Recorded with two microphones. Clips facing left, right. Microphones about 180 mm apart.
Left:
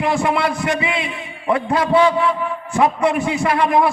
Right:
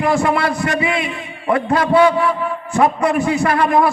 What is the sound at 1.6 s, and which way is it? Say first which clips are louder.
Speech: right 2 dB; centre (ahead or behind).